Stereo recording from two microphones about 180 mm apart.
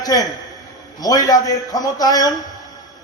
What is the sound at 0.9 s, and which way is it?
A man's voice, 20° left (ahead or behind).